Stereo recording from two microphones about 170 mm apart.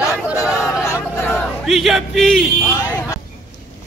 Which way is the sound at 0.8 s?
15° left (ahead or behind).